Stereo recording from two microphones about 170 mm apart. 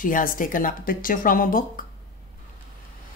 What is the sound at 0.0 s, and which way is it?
Speech, 55° left (ahead or behind).